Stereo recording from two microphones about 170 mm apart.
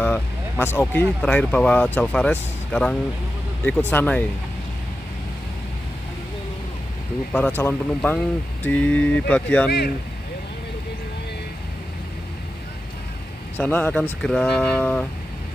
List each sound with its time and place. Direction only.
0.0 s vehicle: 10° left (ahead or behind)
1.0 s speech: 5° left (ahead or behind)
7.3 s speech: 10° left (ahead or behind)
9.7 s speech: 70° left (ahead or behind)
13.6 s speech: 10° left (ahead or behind)